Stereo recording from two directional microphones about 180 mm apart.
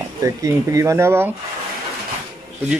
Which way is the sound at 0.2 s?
15° right (ahead or behind).